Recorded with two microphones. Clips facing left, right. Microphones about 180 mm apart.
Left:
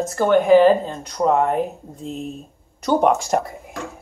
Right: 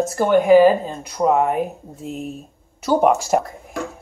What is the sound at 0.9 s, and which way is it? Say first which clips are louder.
Speech: right 1 dB; 5° right (ahead or behind).